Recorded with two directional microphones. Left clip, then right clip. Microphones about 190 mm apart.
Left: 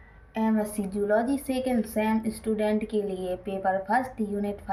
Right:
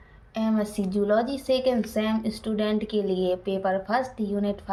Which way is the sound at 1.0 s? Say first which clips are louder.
Right 1 dB; 40° right (ahead or behind).